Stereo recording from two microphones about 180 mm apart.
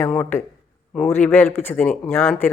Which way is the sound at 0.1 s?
5° left (ahead or behind).